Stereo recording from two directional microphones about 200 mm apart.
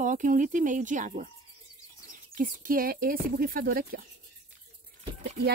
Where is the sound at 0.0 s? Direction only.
40° right (ahead or behind).